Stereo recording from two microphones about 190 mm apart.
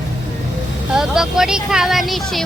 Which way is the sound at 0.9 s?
5° right (ahead or behind).